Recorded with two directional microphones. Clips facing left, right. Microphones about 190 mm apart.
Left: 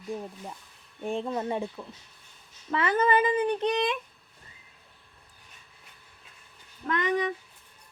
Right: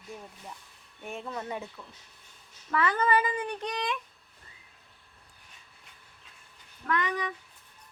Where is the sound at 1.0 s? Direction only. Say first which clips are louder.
Left 7 dB; 30° left (ahead or behind).